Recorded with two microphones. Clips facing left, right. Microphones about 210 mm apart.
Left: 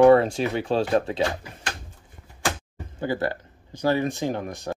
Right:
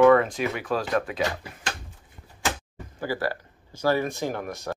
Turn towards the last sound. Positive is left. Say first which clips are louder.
# left 2 dB
turn(degrees=20)  # may be behind; listen again after turning